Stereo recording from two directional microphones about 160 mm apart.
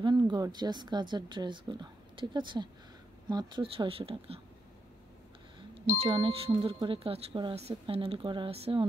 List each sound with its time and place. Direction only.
0.0 s speech: 30° right (ahead or behind)
5.9 s speech: 30° right (ahead or behind)